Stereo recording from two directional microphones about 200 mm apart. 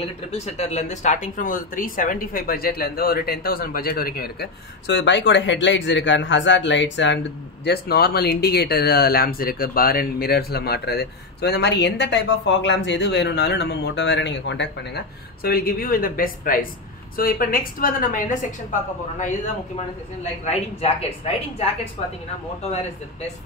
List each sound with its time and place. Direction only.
0.0 s speech: 30° left (ahead or behind); by 7.2 s 65° left (ahead or behind)
7.6 s speech: 55° left (ahead or behind)
20.4 s speech: 30° left (ahead or behind)